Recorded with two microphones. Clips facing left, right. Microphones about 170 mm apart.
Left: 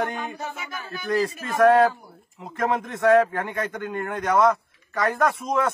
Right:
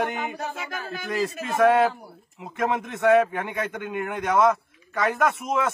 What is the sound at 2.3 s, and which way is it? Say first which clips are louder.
A man's voice: left 1 dB; 5° right (ahead or behind).